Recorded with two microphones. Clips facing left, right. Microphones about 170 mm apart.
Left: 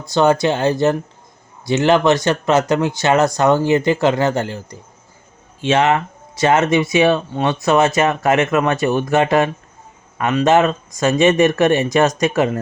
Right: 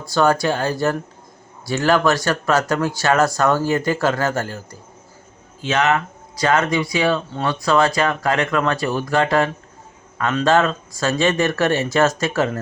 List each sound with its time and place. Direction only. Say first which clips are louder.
0.0 s speech: left 3 dB; 20° left (ahead or behind)